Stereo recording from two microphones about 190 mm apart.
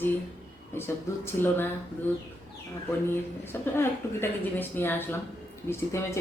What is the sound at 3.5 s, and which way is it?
Speech, 10° left (ahead or behind).